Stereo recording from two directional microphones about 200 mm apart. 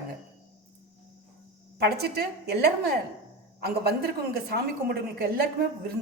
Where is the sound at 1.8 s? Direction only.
55° right (ahead or behind).